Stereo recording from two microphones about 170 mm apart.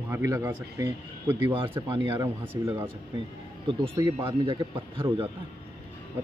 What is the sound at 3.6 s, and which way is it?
Speech, 30° right (ahead or behind).